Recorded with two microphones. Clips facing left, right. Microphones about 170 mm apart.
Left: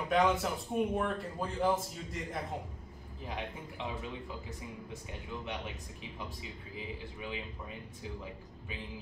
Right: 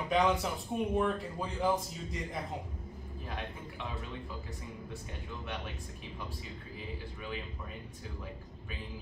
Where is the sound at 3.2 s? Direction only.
15° left (ahead or behind).